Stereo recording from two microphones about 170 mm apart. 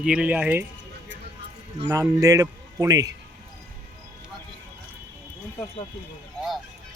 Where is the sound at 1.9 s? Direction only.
20° right (ahead or behind).